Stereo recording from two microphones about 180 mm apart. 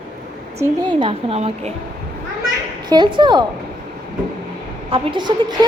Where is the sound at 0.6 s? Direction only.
25° right (ahead or behind).